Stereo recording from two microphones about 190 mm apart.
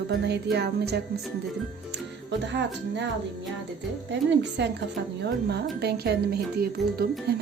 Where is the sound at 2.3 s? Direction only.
65° right (ahead or behind).